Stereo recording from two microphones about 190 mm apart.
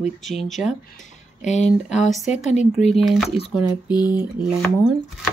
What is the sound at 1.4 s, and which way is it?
Speech, 35° left (ahead or behind).